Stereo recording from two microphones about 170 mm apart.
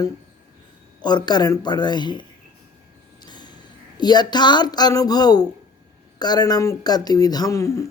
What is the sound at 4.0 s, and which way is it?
Speech, 25° left (ahead or behind).